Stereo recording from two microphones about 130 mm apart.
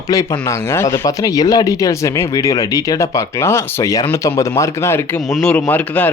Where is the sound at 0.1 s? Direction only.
25° left (ahead or behind).